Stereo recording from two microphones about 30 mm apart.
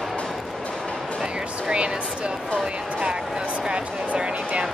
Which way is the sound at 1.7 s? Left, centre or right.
Right.